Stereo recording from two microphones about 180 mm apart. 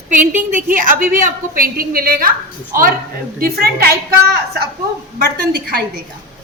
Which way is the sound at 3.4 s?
60° right (ahead or behind).